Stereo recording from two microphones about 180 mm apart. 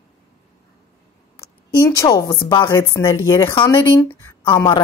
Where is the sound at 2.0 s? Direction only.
25° left (ahead or behind).